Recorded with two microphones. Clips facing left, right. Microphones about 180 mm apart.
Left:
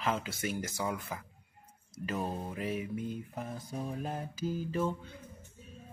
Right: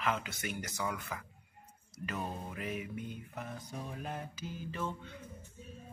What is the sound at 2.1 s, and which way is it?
Music, 30° left (ahead or behind).